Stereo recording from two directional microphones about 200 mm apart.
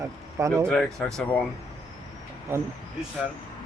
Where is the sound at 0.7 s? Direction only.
5° left (ahead or behind).